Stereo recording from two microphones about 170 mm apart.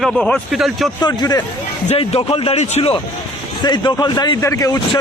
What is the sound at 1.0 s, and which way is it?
Speech, 25° left (ahead or behind).